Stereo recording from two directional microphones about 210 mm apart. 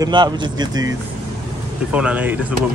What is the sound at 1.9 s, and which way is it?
Speech, 5° right (ahead or behind).